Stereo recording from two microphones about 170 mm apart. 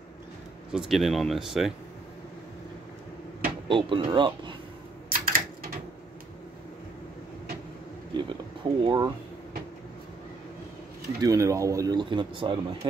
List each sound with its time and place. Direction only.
0.7 s speech: 5° right (ahead or behind)
3.6 s speech: 30° right (ahead or behind)
5.1 s a sound: 55° right (ahead or behind)
8.1 s speech: 30° right (ahead or behind)
11.1 s speech: 20° right (ahead or behind)